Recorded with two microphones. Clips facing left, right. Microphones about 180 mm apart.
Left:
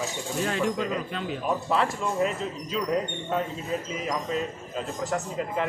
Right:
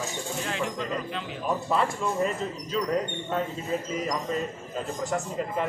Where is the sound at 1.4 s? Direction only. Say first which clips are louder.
Even; centre (ahead or behind).